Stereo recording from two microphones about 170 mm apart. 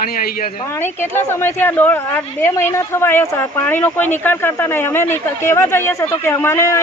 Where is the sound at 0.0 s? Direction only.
60° left (ahead or behind).